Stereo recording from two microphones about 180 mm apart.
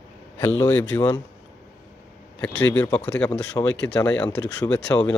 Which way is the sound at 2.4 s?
10° left (ahead or behind).